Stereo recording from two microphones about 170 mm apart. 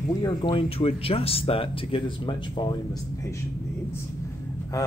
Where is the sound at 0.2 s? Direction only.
25° left (ahead or behind).